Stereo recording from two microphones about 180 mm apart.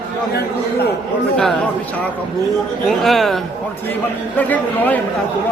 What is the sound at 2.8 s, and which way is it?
Speech, centre (ahead or behind).